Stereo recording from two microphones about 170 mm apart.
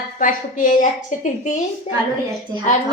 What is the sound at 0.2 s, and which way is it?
A woman's voice, 50° left (ahead or behind).